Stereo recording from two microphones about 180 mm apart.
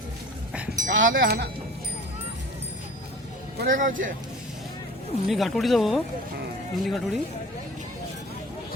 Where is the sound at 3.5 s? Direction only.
50° right (ahead or behind).